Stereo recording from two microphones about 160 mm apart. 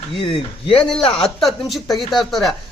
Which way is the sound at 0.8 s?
5° left (ahead or behind).